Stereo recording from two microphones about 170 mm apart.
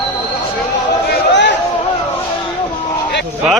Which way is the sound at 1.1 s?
90° left.